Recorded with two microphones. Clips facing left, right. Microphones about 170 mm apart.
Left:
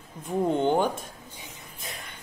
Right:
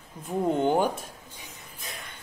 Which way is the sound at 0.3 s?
5° right (ahead or behind).